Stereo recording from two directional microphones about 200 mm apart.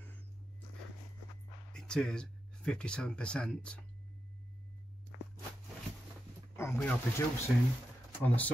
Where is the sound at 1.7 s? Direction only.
5° left (ahead or behind).